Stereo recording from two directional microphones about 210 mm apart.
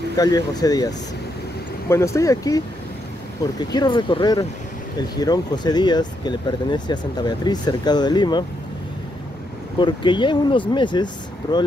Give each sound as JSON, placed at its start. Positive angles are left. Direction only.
{"t": 0.2, "sound": "speech", "side_deg": 15}
{"t": 3.7, "sound": "speech", "side_deg": 20}
{"t": 9.8, "sound": "speech", "side_deg": 20}